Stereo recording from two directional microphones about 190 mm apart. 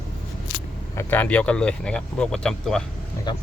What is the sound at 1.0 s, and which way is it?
Speech, 10° left (ahead or behind).